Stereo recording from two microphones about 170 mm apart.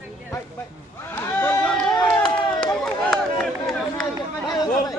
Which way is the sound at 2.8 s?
5° left (ahead or behind).